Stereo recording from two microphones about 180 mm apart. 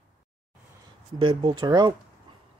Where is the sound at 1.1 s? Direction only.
25° right (ahead or behind).